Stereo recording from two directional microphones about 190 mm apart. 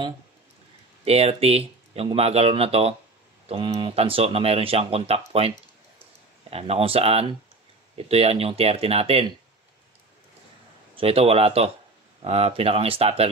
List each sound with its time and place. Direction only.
1.0 s speech: 35° right (ahead or behind)
6.5 s speech: 30° right (ahead or behind)
11.0 s speech: 30° right (ahead or behind)